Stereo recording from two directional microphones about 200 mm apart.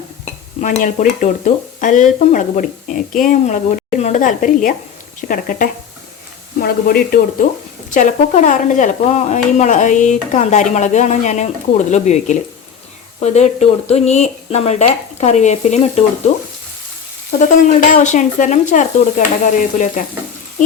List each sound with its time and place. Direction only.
0.6 s speech: 35° left (ahead or behind)
17.7 s speech: 40° left (ahead or behind)